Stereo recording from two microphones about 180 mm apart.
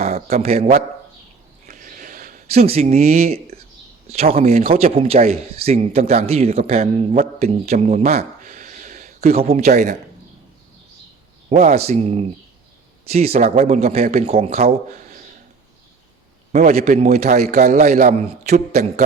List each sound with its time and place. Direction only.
0.0 s a man's voice: 35° right (ahead or behind)
1.6 s a sound: 45° right (ahead or behind)
4.1 s speech: 35° right (ahead or behind)
11.4 s speech: 35° right (ahead or behind)
17.0 s speech: 35° right (ahead or behind)